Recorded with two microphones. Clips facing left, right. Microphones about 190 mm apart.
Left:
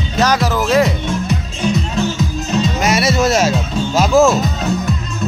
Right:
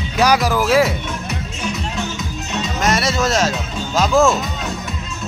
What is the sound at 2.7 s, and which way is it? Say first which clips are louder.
Speech: even; 5° left (ahead or behind).